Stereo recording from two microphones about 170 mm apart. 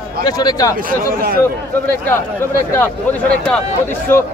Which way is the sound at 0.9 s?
60° right (ahead or behind).